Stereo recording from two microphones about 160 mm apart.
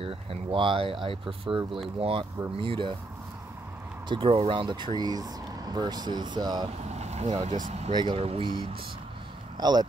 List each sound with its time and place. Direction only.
0.0 s speech: 35° right (ahead or behind)
4.1 s speech: 35° right (ahead or behind)
6.8 s speech: 45° right (ahead or behind)
7.9 s speech: 30° right (ahead or behind)
8.2 s speech: 40° right (ahead or behind)
9.6 s speech: 25° right (ahead or behind)